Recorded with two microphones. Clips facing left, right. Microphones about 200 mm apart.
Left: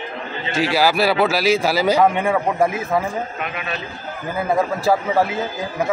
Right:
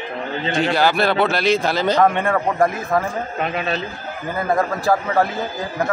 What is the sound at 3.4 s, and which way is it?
Speech, 35° right (ahead or behind).